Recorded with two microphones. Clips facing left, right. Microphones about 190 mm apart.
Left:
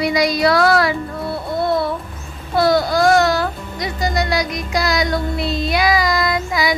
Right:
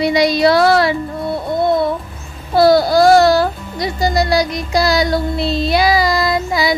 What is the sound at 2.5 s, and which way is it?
Speech, 35° right (ahead or behind).